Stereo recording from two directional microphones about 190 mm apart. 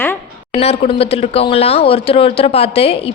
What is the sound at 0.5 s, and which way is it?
Speech, 30° left (ahead or behind).